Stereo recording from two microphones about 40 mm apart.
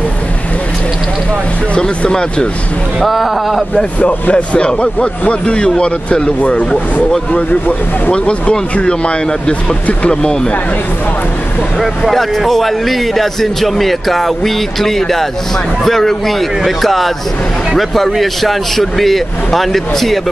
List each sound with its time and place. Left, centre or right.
1.8 s speech: left
3.0 s a man's voice: centre
4.0 s speech: left
5.5 s speech: left
8.1 s speech: left
12.1 s a man's voice: centre